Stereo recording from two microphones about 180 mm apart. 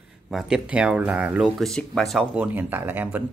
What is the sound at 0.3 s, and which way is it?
Speech, 5° right (ahead or behind).